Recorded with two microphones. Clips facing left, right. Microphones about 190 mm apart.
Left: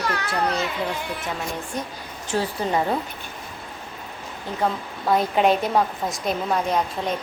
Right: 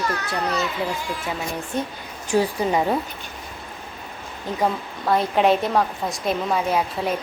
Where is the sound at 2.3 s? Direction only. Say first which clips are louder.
Right 3 dB; 15° right (ahead or behind).